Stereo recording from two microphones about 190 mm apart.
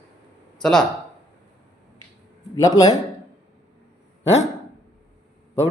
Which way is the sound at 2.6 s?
20° left (ahead or behind).